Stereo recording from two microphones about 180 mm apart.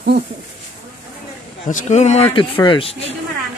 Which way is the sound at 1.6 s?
45° left (ahead or behind).